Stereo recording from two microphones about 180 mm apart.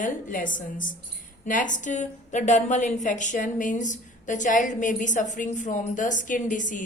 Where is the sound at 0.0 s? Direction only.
45° left (ahead or behind).